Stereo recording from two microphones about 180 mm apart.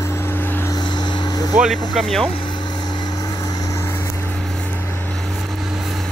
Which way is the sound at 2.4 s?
25° left (ahead or behind).